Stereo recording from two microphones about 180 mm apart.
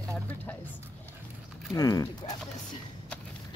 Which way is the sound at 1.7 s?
20° left (ahead or behind).